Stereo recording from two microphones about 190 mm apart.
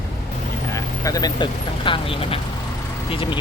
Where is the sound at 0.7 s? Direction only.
20° left (ahead or behind).